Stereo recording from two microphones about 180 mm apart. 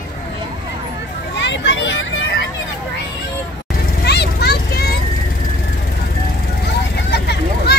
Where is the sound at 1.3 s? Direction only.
80° left.